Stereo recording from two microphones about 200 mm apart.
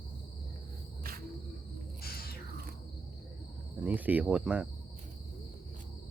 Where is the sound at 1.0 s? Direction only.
50° right (ahead or behind).